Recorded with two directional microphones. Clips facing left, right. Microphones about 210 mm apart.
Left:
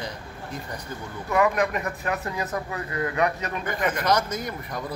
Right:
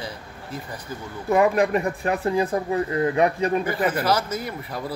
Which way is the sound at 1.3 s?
30° right (ahead or behind).